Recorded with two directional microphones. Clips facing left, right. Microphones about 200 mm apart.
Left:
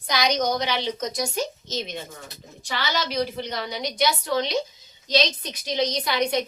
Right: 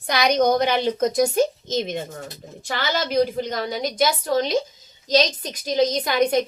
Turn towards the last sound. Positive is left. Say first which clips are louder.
# right 4 dB
turn(degrees=-50)  # may be behind; listen again after turning